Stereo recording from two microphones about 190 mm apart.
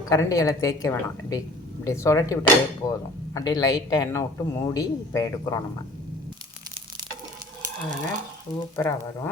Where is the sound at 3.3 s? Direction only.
20° left (ahead or behind).